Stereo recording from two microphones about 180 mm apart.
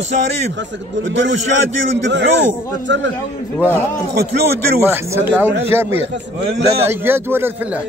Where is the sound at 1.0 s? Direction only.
90° right.